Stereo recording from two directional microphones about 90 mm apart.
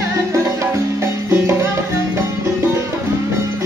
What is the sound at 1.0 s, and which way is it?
Music, 30° right (ahead or behind).